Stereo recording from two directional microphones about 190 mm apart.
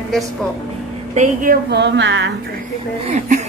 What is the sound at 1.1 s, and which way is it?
A woman's voice, 40° right (ahead or behind).